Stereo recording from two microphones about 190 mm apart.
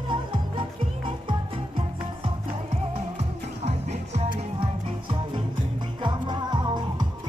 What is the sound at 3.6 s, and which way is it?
Music, 30° right (ahead or behind).